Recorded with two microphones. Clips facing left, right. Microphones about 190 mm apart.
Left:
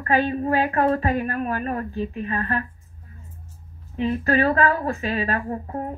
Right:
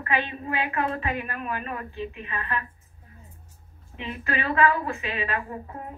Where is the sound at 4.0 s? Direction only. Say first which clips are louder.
Left 10 dB; 40° left (ahead or behind).